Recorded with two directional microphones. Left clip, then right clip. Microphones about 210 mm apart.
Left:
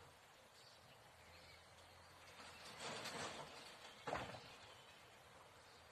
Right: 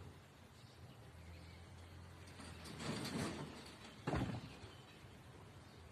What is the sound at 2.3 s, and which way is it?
Vehicle, 30° right (ahead or behind).